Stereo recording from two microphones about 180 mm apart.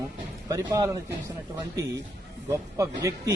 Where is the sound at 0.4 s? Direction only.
20° right (ahead or behind).